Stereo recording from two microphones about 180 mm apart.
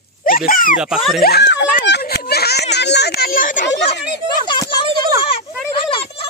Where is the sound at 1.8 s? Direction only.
65° left (ahead or behind); by 3.6 s 50° left (ahead or behind).